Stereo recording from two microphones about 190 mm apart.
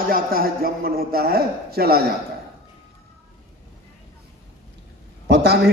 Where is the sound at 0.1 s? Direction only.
50° right (ahead or behind).